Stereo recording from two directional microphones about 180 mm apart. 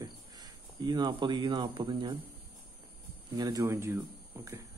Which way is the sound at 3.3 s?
20° right (ahead or behind).